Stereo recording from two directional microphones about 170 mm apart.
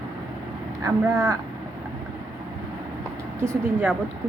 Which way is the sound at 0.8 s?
20° right (ahead or behind).